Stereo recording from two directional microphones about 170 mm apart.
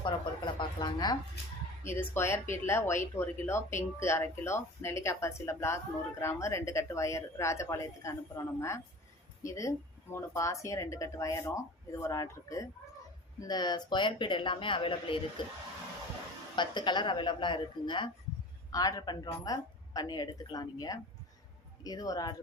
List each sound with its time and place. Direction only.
0.0 s speech: 25° left (ahead or behind)
1.8 s a woman's voice: 15° left (ahead or behind); by 15.2 s 30° left (ahead or behind)
16.6 s a woman's voice: 25° left (ahead or behind)